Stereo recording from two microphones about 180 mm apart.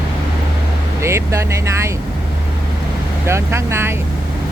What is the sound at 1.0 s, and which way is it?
Speech, 15° right (ahead or behind).